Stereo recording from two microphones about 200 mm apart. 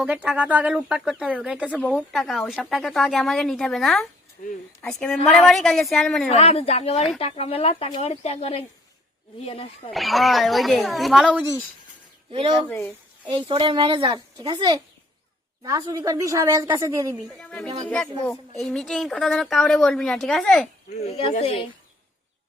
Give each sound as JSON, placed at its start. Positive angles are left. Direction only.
{"t": 0.0, "sound": "a woman's voice", "side_deg": -5}
{"t": 1.8, "sound": "speech", "side_deg": 5}
{"t": 4.4, "sound": "speech", "side_deg": 40}
{"t": 4.8, "sound": "speech", "side_deg": 5}
{"t": 6.2, "sound": "speech", "side_deg": 30}
{"t": 9.9, "sound": "speech", "side_deg": 0}
{"t": 12.6, "sound": "speech", "side_deg": 15}
{"t": 13.5, "sound": "a woman's voice", "side_deg": -25}
{"t": 17.2, "sound": "speech", "side_deg": 5}
{"t": 20.9, "sound": "speech", "side_deg": 30}